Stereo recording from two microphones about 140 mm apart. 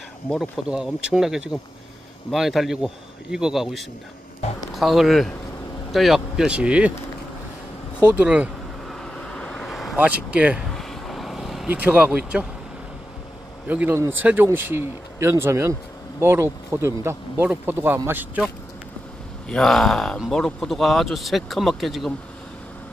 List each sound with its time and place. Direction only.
0.3 s speech: 5° right (ahead or behind)
8.0 s speech: 10° right (ahead or behind)
8.8 s vehicle: 5° left (ahead or behind)
9.9 s speech: 10° right (ahead or behind)
10.7 s vehicle: centre (ahead or behind)
11.7 s speech: 10° right (ahead or behind)
13.7 s speech: 15° right (ahead or behind)
19.5 s speech: 5° left (ahead or behind)